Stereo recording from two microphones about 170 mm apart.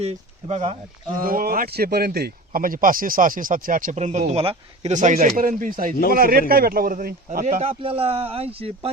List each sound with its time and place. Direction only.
0.0 s speech: 40° right (ahead or behind)
1.2 s speech: 55° right (ahead or behind)
7.6 s speech: 35° right (ahead or behind)